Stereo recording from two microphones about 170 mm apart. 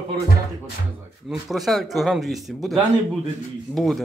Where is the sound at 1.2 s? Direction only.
Centre (ahead or behind).